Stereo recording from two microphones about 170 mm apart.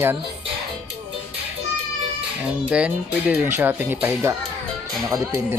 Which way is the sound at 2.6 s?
5° right (ahead or behind).